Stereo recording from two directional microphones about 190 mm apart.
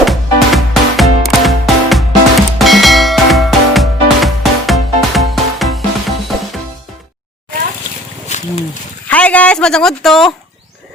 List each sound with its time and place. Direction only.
0.0 s music: centre (ahead or behind)
8.3 s wild animals: 35° left (ahead or behind)
9.0 s speech: 5° left (ahead or behind)